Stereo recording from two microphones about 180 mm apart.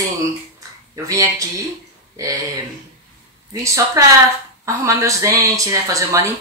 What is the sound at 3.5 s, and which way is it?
Speech, 15° right (ahead or behind).